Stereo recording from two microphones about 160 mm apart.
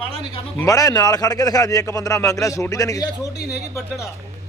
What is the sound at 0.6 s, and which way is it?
A man's voice, 20° left (ahead or behind).